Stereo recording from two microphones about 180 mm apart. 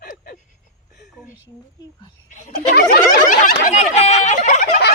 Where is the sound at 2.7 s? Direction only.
55° left (ahead or behind).